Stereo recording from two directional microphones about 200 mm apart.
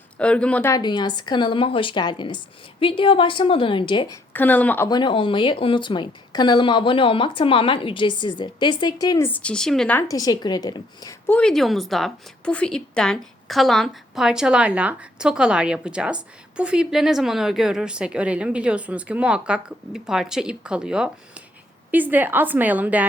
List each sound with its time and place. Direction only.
0.2 s a woman's voice: 5° left (ahead or behind)
0.8 s a woman's voice: 20° left (ahead or behind)
4.3 s speech: 10° left (ahead or behind)
4.9 s a woman's voice: 25° left (ahead or behind)
11.3 s a woman's voice: 5° left (ahead or behind)